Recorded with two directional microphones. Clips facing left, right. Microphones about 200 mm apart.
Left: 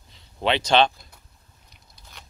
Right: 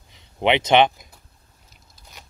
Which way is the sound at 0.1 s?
20° right (ahead or behind).